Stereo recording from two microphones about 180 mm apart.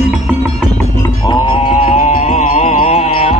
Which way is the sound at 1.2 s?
25° left (ahead or behind).